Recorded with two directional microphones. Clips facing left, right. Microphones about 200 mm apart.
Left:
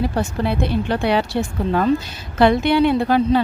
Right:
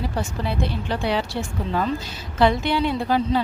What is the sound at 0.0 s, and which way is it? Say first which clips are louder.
Speech: left 6 dB; 60° left (ahead or behind).